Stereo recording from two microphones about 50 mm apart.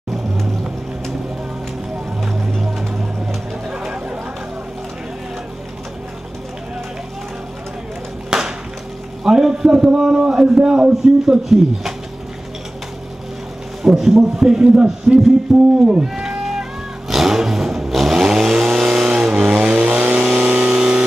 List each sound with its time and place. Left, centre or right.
2.2 s vehicle: centre
3.7 s chatter: centre
8.3 s music: centre
9.2 s frying: centre
9.9 s speech: centre
11.4 s speech: centre
13.8 s speech: centre
14.6 s a man's voice: right
16.2 s a sound: centre
17.1 s vehicle: centre
19.5 s vehicle: right
20.7 s music: centre